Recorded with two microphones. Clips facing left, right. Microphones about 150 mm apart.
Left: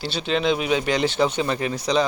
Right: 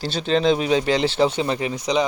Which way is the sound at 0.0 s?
40° right (ahead or behind).